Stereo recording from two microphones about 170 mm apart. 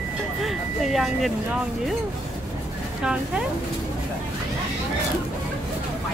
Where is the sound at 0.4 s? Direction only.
Centre (ahead or behind).